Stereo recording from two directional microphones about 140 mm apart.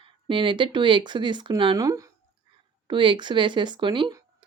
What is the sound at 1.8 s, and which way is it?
Speech, 25° right (ahead or behind).